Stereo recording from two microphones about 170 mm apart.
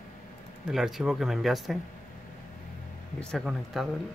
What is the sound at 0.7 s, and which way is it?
Speech, centre (ahead or behind).